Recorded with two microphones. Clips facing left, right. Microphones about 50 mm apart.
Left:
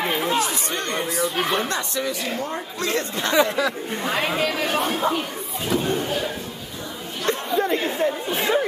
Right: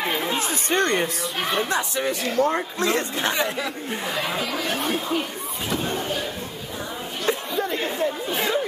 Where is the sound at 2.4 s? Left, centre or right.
Right.